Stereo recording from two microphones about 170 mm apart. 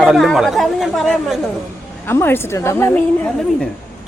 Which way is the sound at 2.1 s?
15° left (ahead or behind).